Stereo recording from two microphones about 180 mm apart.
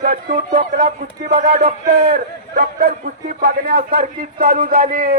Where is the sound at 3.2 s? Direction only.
55° right (ahead or behind).